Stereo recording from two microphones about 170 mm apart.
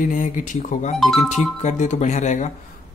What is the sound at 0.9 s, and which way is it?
Speech, centre (ahead or behind).